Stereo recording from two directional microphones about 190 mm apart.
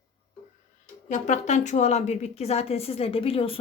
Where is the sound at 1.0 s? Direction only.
40° left (ahead or behind).